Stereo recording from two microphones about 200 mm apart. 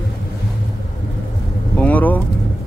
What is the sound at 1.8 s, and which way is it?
Speech, 10° left (ahead or behind).